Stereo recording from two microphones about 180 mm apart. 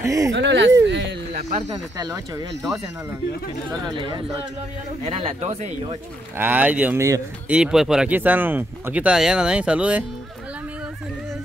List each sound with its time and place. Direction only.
0.0 s speech: 20° right (ahead or behind)
0.3 s speech: 80° right
2.0 s speech: 20° right (ahead or behind)
3.8 s speech: 25° right (ahead or behind)
6.3 s speech: 10° right (ahead or behind)